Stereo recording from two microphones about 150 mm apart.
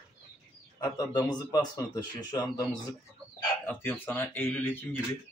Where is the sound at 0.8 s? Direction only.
25° left (ahead or behind).